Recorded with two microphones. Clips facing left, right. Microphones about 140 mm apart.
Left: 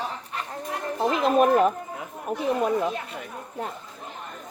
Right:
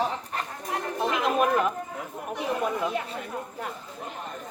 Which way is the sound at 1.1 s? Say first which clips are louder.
Left 5 dB; 35° left (ahead or behind).